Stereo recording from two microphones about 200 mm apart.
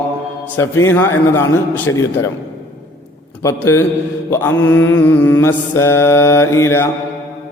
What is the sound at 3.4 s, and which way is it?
Mantra, 15° left (ahead or behind).